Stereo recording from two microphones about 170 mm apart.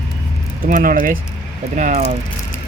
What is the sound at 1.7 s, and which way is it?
Speech, 45° right (ahead or behind).